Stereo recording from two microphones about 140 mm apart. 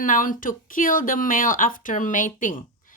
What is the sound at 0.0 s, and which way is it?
Speech, 70° left (ahead or behind).